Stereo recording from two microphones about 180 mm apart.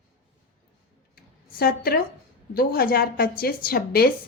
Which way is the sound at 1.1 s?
60° left (ahead or behind).